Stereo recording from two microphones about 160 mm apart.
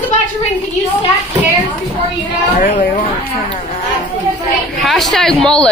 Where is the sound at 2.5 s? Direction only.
55° left (ahead or behind).